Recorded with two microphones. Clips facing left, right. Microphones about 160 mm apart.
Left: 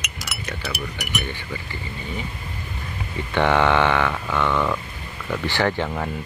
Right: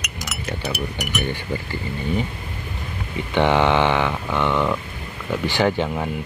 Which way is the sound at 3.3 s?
20° right (ahead or behind).